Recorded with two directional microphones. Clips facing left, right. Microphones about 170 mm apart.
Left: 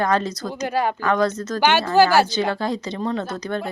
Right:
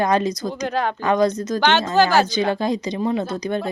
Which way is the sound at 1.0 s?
15° right (ahead or behind).